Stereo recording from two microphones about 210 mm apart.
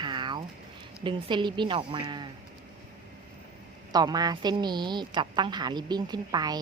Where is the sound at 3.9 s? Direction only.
20° right (ahead or behind).